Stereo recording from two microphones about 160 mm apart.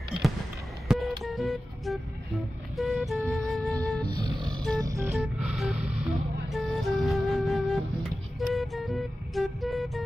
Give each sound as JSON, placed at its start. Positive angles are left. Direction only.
{"t": 0.8, "sound": "music", "side_deg": 0}
{"t": 4.2, "sound": "music", "side_deg": -30}
{"t": 5.1, "sound": "music", "side_deg": -5}